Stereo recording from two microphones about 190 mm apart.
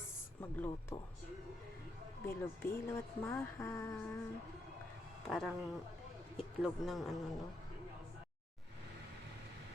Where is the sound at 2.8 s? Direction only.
15° left (ahead or behind).